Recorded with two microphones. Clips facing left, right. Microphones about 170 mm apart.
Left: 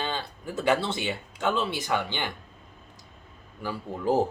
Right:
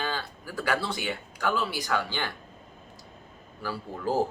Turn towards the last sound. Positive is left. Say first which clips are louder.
# left 3 dB
turn(degrees=20)  # may be behind; listen again after turning